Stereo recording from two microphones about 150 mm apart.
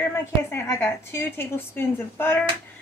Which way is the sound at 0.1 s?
15° left (ahead or behind).